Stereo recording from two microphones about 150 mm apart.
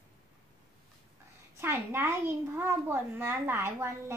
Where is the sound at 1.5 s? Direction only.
15° right (ahead or behind).